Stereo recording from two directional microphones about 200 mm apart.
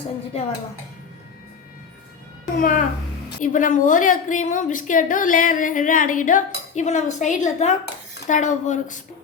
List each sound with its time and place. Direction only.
2.6 s a woman's voice: 40° left (ahead or behind)